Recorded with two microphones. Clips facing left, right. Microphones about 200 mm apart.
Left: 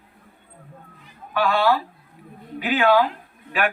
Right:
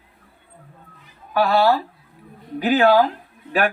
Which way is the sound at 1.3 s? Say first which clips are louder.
Right 3 dB; 40° right (ahead or behind).